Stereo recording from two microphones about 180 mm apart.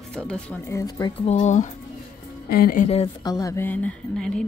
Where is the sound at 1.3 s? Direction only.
40° left (ahead or behind).